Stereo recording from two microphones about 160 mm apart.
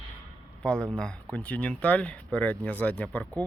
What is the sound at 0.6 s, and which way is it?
Speech, 5° left (ahead or behind).